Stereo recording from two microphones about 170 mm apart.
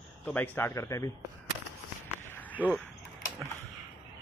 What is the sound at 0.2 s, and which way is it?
Speech, 10° left (ahead or behind).